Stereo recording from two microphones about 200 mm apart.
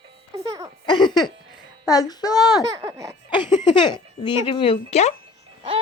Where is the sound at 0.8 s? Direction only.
20° left (ahead or behind).